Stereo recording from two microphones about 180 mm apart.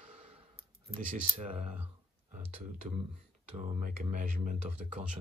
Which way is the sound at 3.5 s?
40° right (ahead or behind).